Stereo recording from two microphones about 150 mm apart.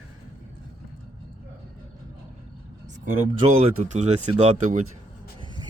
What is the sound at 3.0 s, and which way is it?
Speech, 45° right (ahead or behind).